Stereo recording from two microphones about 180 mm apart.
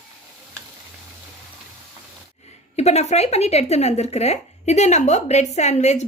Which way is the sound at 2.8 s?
35° left (ahead or behind).